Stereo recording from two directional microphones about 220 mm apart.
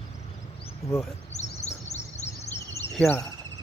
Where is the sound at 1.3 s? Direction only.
30° left (ahead or behind).